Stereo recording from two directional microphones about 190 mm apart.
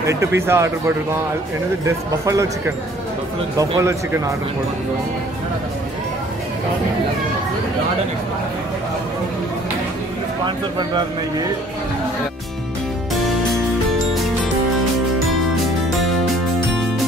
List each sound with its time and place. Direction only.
0.0 s speech: 15° right (ahead or behind)
3.5 s speech: 15° right (ahead or behind)
13.1 s music: centre (ahead or behind)
15.9 s music: centre (ahead or behind)